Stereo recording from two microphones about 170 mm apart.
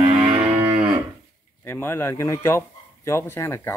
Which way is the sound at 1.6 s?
15° left (ahead or behind).